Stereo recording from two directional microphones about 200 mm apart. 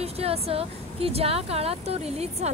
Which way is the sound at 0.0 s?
30° right (ahead or behind).